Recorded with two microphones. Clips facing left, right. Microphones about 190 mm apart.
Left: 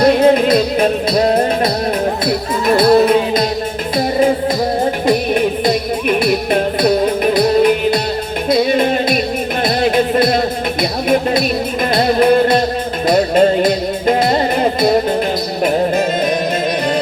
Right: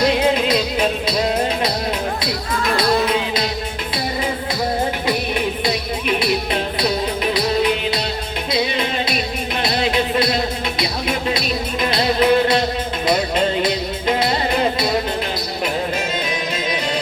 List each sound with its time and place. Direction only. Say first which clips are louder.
0.0 s music: left 7 dB; 50° left (ahead or behind)
5.0 s music: left 7 dB; 50° left (ahead or behind)